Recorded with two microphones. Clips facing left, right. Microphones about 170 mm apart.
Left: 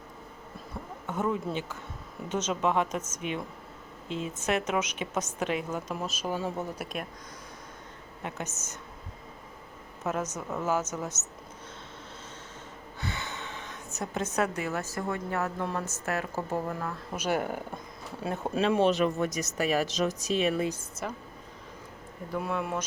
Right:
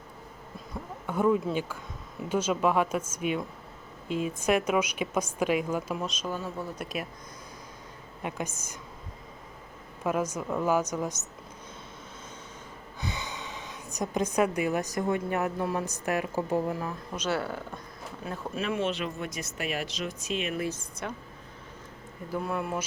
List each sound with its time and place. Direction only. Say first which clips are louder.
1.0 s a woman's voice: right 5 dB; 10° right (ahead or behind)
6.0 s speech: left 1 dB; 5° left (ahead or behind)
6.8 s speech: right 2 dB; 5° right (ahead or behind)
8.2 s a woman's voice: right 3 dB; 15° right (ahead or behind)
10.0 s a woman's voice: right 3 dB; 10° right (ahead or behind)
13.0 s a woman's voice: right 1 dB; 15° right (ahead or behind)
17.1 s speech: left 2 dB; 10° left (ahead or behind)
18.2 s speech: left 5 dB; 30° left (ahead or behind)
21.0 s speech: left 1 dB; centre (ahead or behind)
22.3 s speech: even; centre (ahead or behind)